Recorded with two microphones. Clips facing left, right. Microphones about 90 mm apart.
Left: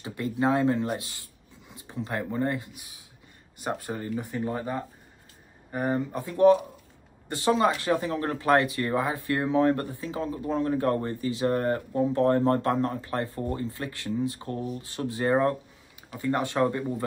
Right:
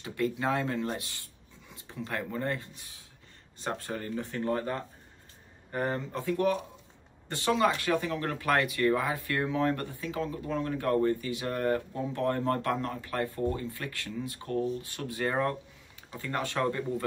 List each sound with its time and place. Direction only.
0.0 s speech: 25° left (ahead or behind)